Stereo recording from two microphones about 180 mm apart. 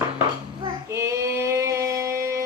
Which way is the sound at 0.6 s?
15° right (ahead or behind).